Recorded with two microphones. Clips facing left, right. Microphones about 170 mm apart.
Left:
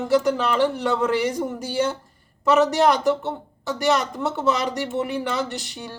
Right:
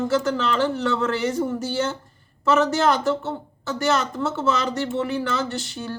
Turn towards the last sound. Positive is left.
turn(degrees=15)  # may be behind; listen again after turning